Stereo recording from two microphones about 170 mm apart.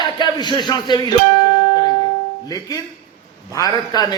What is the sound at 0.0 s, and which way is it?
Speech, 25° left (ahead or behind).